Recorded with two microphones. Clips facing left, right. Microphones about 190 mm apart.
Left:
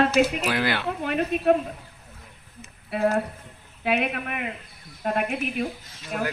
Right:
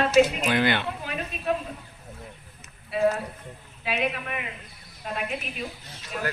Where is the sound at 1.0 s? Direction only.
60° left (ahead or behind).